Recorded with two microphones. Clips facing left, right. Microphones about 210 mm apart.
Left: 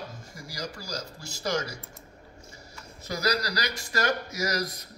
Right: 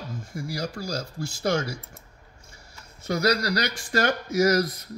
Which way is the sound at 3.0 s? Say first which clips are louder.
Right 5 dB; 55° right (ahead or behind).